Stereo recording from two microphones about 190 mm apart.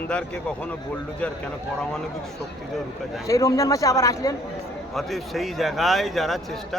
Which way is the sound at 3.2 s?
15° left (ahead or behind).